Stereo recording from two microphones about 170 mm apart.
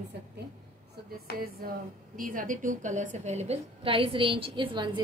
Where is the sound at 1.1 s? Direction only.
60° right (ahead or behind); by 5.0 s 25° right (ahead or behind).